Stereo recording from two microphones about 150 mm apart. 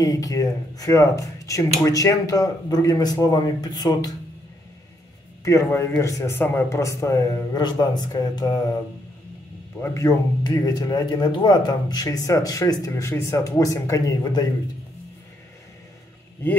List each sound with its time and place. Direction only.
0.0 s speech: 25° left (ahead or behind)
5.4 s speech: 20° left (ahead or behind)
9.8 s speech: 20° left (ahead or behind)